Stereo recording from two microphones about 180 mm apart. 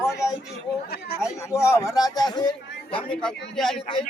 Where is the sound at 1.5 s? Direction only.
15° left (ahead or behind).